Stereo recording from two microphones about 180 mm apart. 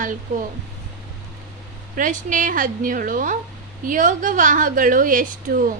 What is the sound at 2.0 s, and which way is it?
A woman's voice, 45° right (ahead or behind).